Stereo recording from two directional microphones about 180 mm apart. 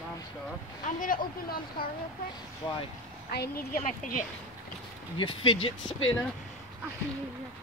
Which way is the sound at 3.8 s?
45° left (ahead or behind).